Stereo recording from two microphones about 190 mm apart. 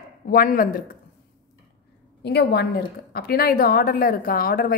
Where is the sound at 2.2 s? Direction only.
60° left (ahead or behind).